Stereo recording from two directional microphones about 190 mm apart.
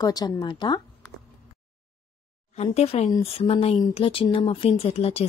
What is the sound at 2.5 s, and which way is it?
Speech, 35° left (ahead or behind).